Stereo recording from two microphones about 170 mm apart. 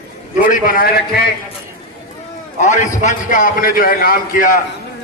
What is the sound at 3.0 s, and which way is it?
A man's voice, 50° left (ahead or behind).